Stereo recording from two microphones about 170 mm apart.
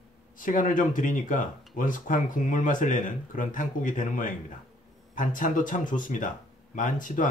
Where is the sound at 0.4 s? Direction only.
50° left (ahead or behind).